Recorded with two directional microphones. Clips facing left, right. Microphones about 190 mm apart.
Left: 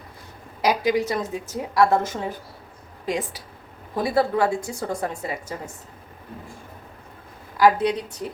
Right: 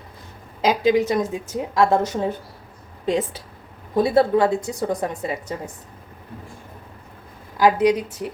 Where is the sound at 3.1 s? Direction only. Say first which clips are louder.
Right 5 dB; 25° right (ahead or behind).